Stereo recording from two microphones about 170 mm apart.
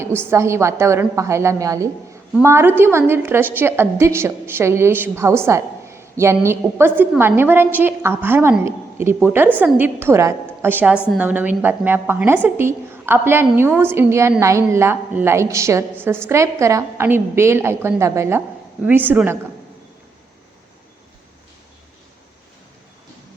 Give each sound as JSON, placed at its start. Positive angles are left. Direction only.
{"t": 0.3, "sound": "a woman's voice", "side_deg": -15}